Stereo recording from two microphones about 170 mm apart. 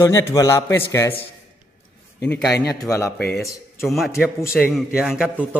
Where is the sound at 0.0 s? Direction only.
20° left (ahead or behind).